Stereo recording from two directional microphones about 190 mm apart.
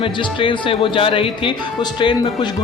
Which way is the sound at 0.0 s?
25° left (ahead or behind).